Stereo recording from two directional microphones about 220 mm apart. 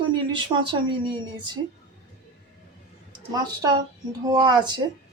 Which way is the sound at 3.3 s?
15° right (ahead or behind).